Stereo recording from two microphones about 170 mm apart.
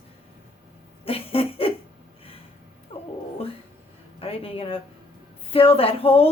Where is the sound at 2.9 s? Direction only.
35° left (ahead or behind).